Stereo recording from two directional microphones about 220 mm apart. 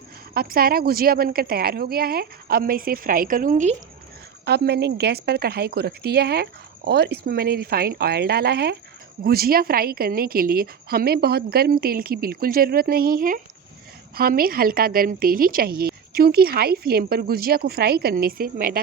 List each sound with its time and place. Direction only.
0.3 s a woman's voice: 40° right (ahead or behind)
4.4 s a woman's voice: 50° right (ahead or behind)